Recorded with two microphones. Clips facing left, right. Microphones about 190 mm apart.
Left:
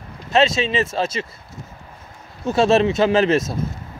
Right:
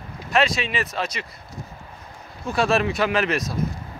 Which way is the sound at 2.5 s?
25° left (ahead or behind).